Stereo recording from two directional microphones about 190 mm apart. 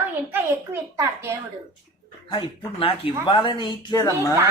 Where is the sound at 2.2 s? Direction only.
30° left (ahead or behind).